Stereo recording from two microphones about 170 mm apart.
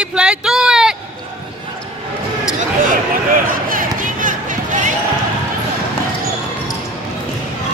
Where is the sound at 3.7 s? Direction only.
50° right (ahead or behind).